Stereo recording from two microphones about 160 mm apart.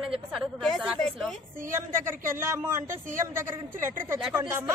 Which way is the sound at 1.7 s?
15° right (ahead or behind).